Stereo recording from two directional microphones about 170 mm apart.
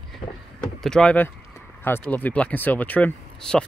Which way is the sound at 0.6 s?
5° left (ahead or behind).